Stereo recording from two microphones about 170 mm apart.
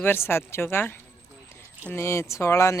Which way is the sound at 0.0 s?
15° left (ahead or behind).